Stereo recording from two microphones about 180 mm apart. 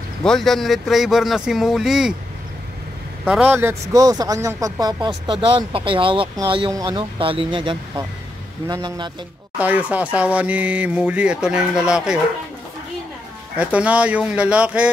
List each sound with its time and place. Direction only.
0.2 s speech: centre (ahead or behind)
3.3 s speech: 10° right (ahead or behind)
9.6 s speech: 10° right (ahead or behind)
13.6 s speech: 10° right (ahead or behind)